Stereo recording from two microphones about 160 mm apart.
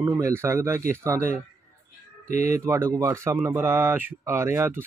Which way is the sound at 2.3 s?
50° left (ahead or behind).